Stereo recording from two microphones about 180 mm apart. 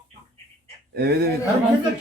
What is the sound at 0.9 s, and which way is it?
Speech, 60° right (ahead or behind).